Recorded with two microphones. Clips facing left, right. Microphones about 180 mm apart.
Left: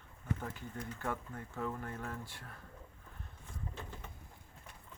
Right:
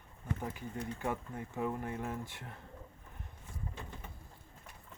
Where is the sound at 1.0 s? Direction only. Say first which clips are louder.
Right 1 dB; 15° right (ahead or behind).